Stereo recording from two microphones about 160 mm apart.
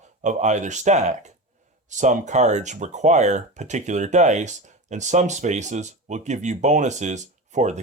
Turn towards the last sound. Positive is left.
turn(degrees=-45)  # may be behind; listen again after turning